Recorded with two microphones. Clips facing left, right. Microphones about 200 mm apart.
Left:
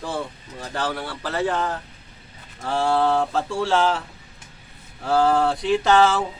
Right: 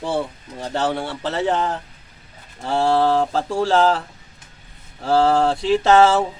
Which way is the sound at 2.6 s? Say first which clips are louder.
Right 3 dB; 30° right (ahead or behind).